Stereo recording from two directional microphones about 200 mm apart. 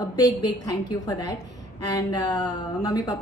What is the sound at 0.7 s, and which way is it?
A woman's voice, 20° left (ahead or behind).